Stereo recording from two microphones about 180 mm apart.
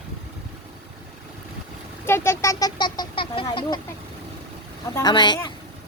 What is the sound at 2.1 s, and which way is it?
Speech, 15° left (ahead or behind).